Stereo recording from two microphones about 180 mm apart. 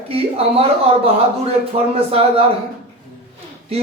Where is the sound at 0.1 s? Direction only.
35° right (ahead or behind).